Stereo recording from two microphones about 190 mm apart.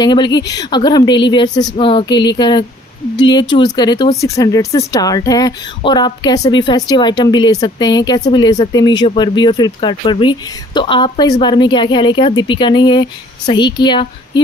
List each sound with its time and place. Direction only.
0.0 s speech: 25° left (ahead or behind)